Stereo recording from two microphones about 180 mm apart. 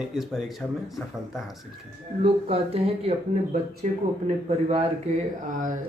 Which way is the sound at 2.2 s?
35° right (ahead or behind).